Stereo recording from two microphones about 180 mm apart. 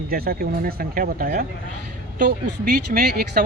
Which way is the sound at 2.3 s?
70° right (ahead or behind).